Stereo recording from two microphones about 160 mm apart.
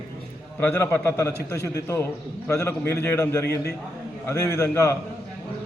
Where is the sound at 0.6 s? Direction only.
15° left (ahead or behind).